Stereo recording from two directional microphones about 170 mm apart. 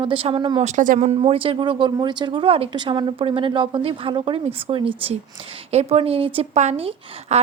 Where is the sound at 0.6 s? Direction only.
45° right (ahead or behind).